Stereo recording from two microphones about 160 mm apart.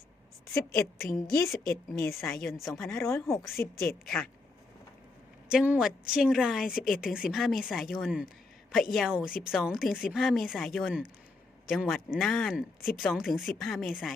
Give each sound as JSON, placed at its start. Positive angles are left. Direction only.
{"t": 0.7, "sound": "speech", "side_deg": 0}
{"t": 1.1, "sound": "a woman's voice", "side_deg": 15}
{"t": 2.6, "sound": "speech", "side_deg": 0}
{"t": 3.1, "sound": "a woman's voice", "side_deg": 15}
{"t": 3.3, "sound": "speech", "side_deg": 0}
{"t": 5.5, "sound": "speech", "side_deg": -5}